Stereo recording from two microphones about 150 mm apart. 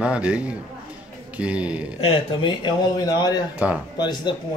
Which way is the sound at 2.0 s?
35° left (ahead or behind).